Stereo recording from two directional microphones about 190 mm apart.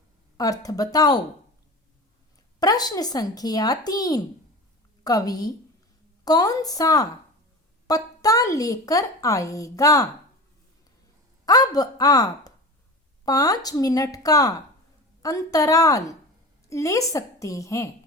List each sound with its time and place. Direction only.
0.3 s speech: 20° left (ahead or behind)
2.6 s a child's voice: 20° left (ahead or behind)
11.4 s a child's voice: 20° left (ahead or behind)